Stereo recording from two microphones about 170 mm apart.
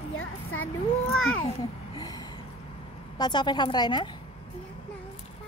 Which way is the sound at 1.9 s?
25° left (ahead or behind).